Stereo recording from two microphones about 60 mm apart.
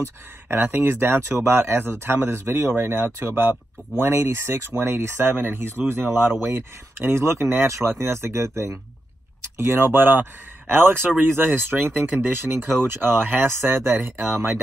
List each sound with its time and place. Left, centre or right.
0.0 s speech: right